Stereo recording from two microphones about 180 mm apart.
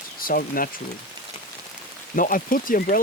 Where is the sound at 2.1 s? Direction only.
50° left (ahead or behind).